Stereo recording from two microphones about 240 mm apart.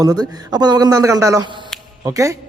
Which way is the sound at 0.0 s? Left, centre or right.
Centre.